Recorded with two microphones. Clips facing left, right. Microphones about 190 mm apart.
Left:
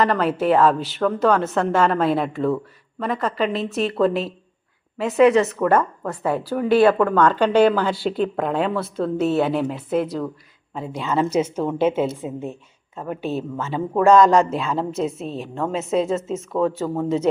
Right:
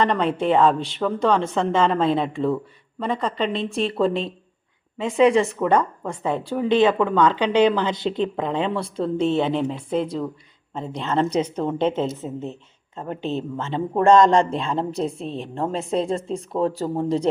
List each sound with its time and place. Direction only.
0.0 s a woman's voice: 5° left (ahead or behind)
13.7 s speech: 30° right (ahead or behind)
14.1 s a woman's voice: 5° left (ahead or behind)
16.5 s a man's voice: 30° right (ahead or behind)